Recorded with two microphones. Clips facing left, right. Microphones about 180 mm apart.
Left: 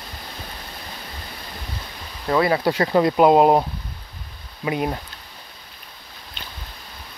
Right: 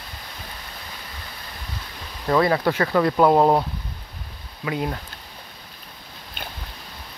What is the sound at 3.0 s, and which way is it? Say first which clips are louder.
Speech: left 2 dB; 20° left (ahead or behind).